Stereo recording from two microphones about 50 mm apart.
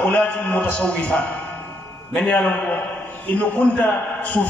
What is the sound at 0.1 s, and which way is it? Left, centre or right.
A man's voice, left.